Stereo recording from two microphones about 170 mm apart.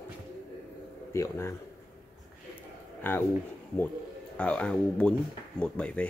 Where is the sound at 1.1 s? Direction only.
15° left (ahead or behind).